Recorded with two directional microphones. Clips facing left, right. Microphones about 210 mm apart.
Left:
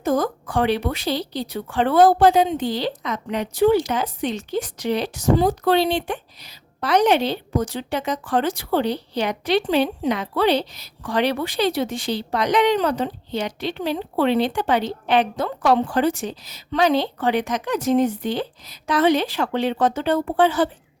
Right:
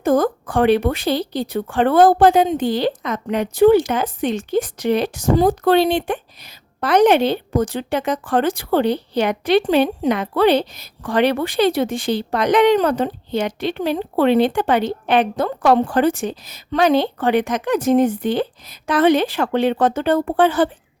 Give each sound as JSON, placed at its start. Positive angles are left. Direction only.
{"t": 0.0, "sound": "speech", "side_deg": -55}